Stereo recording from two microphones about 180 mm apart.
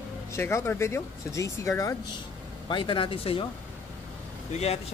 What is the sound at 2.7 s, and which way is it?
Speech, 30° left (ahead or behind).